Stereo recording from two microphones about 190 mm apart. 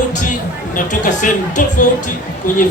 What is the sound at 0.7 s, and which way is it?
A woman's voice, 40° left (ahead or behind).